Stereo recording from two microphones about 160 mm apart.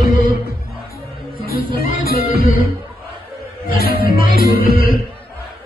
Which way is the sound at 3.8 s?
65° left (ahead or behind).